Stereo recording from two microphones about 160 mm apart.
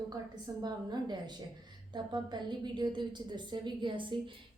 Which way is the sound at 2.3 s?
30° right (ahead or behind).